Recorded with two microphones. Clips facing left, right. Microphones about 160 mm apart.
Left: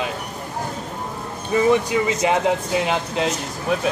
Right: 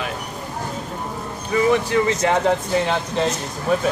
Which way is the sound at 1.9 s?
15° left (ahead or behind).